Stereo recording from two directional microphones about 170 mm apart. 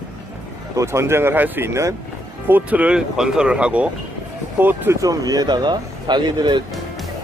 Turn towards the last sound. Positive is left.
turn(degrees=-25)  # may be behind; listen again after turning